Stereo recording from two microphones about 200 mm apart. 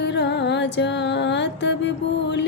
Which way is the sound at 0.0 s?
60° left (ahead or behind).